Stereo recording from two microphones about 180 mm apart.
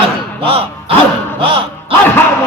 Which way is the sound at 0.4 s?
30° right (ahead or behind).